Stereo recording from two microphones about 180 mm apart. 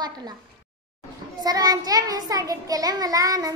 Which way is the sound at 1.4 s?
20° right (ahead or behind).